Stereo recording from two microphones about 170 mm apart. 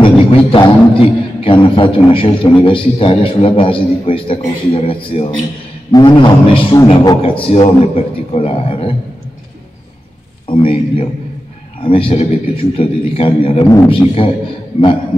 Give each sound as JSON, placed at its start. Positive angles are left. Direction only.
{"t": 0.5, "sound": "a man's voice", "side_deg": 30}
{"t": 10.4, "sound": "a man's voice", "side_deg": 35}